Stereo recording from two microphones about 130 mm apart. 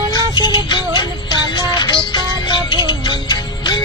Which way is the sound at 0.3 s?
35° left (ahead or behind).